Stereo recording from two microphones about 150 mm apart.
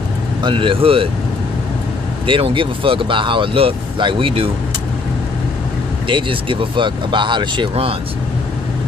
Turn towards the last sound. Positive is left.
turn(degrees=-40)  # may be behind; listen again after turning